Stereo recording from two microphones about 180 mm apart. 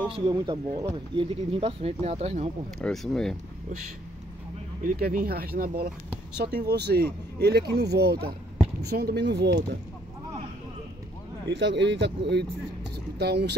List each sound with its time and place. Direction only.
0.3 s speech: 25° right (ahead or behind)
2.8 s speech: centre (ahead or behind)
4.8 s speech: 50° right (ahead or behind); by 9.8 s 70° right (ahead or behind)
11.4 s speech: 75° right (ahead or behind)